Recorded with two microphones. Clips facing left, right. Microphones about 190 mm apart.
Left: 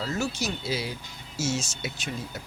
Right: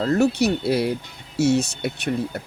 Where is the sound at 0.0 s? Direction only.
60° right (ahead or behind).